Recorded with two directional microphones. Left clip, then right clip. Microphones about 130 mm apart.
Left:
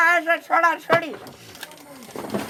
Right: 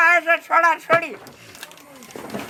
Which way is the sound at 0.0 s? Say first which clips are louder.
Right 2 dB; 10° right (ahead or behind).